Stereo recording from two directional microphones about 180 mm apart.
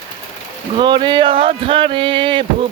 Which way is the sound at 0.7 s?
25° right (ahead or behind).